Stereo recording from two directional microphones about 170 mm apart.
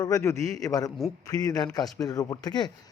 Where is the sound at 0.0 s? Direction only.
15° left (ahead or behind).